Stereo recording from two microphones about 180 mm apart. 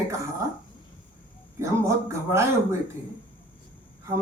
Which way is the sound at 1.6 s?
15° right (ahead or behind).